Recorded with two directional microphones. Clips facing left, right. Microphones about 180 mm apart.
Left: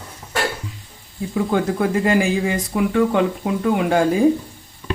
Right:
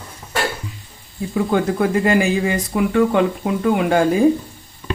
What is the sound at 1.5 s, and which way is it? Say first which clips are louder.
Speech: right 2 dB; 60° right (ahead or behind).